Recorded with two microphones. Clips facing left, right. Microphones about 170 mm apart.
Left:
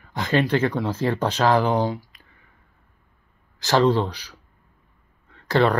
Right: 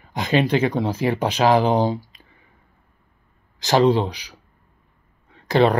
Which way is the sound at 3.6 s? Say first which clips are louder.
Right 2 dB; 15° right (ahead or behind).